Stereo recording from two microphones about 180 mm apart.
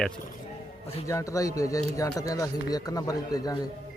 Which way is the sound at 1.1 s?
15° left (ahead or behind).